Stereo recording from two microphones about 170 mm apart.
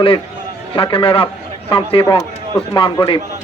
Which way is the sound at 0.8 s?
30° left (ahead or behind).